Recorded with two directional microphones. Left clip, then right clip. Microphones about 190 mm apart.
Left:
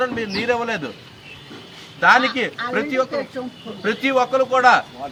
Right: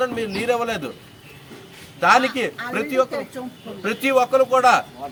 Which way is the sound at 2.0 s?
20° right (ahead or behind).